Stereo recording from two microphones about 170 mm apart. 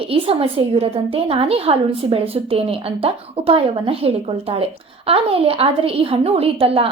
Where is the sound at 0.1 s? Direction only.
35° right (ahead or behind).